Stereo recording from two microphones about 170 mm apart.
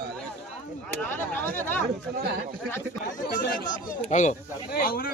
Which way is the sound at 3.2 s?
55° left (ahead or behind).